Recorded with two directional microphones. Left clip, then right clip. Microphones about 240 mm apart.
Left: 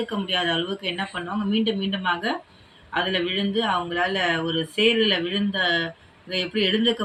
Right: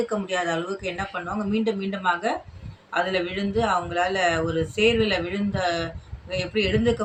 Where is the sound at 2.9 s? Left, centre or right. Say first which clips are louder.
Left 1 dB; centre.